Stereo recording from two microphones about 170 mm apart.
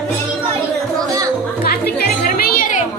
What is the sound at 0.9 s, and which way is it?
Music, 20° right (ahead or behind).